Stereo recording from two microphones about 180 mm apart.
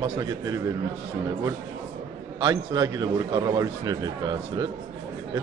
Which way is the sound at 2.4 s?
20° right (ahead or behind).